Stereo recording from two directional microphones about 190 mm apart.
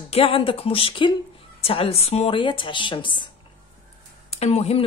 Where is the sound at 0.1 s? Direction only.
30° left (ahead or behind).